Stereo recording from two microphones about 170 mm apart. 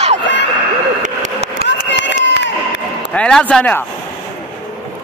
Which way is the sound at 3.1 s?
5° left (ahead or behind).